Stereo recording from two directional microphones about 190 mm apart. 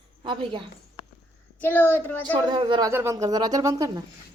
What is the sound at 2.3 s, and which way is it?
Speech, 25° right (ahead or behind).